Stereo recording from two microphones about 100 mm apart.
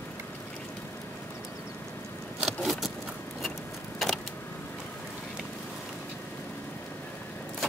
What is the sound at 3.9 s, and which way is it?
Vehicle, centre (ahead or behind).